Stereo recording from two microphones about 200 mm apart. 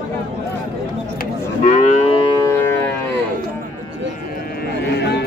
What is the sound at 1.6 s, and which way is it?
Moo, 35° left (ahead or behind).